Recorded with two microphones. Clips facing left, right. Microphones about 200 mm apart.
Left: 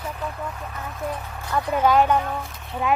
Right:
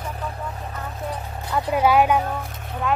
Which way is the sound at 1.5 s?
10° right (ahead or behind).